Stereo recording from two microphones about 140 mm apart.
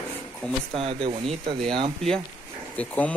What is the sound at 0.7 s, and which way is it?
Speech, 40° right (ahead or behind).